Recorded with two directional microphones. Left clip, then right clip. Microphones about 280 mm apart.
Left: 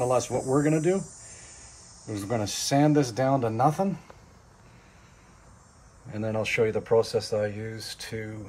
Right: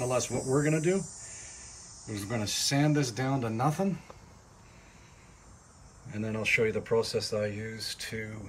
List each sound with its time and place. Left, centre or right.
0.0 s speech: centre
6.0 s speech: centre